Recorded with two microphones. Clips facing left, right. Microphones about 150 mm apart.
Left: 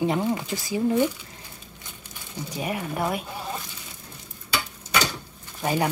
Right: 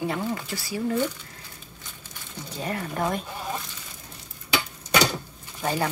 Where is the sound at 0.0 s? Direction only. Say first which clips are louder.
Left 4 dB; 20° left (ahead or behind).